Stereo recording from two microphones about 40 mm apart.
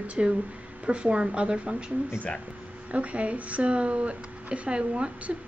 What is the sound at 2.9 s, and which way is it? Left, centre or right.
Speech, right.